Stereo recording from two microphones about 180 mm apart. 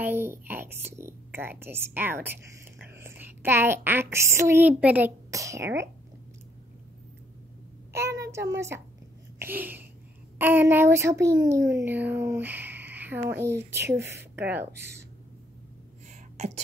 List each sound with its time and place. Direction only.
0.0 s speech: 10° right (ahead or behind)
8.2 s speech: 15° right (ahead or behind)